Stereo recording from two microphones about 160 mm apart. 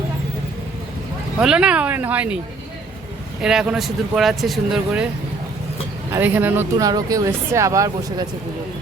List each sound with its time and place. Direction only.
1.4 s speech: 5° right (ahead or behind)
3.4 s speech: 5° right (ahead or behind)
6.1 s speech: 15° right (ahead or behind)